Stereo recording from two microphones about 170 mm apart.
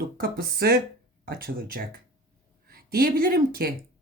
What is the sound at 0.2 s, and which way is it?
A woman's voice, 65° right (ahead or behind).